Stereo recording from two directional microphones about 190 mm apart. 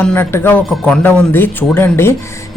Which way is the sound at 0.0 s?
10° left (ahead or behind).